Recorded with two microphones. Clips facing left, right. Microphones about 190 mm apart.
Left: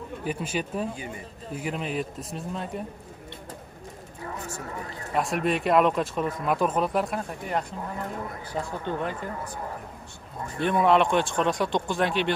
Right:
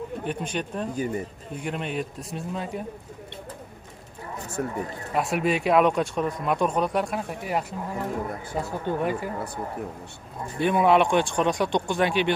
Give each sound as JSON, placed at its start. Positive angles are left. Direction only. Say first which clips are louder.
{"t": 0.2, "sound": "speech", "louder": "left 2 dB", "side_deg": 5}
{"t": 0.9, "sound": "speech", "louder": "right 10 dB", "side_deg": -40}
{"t": 1.5, "sound": "speech", "louder": "left 1 dB", "side_deg": 0}
{"t": 4.6, "sound": "a man's voice", "louder": "right 9 dB", "side_deg": -60}
{"t": 5.1, "sound": "speech", "louder": "right 1 dB", "side_deg": 0}
{"t": 10.6, "sound": "speech", "louder": "right 1 dB", "side_deg": -5}